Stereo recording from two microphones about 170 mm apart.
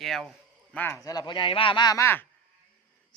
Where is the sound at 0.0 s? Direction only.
Centre (ahead or behind).